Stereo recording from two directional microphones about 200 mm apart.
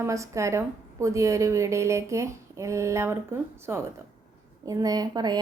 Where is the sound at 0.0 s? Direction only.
15° right (ahead or behind).